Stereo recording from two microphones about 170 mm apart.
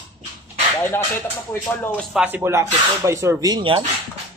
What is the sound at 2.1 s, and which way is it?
Speech, 10° right (ahead or behind).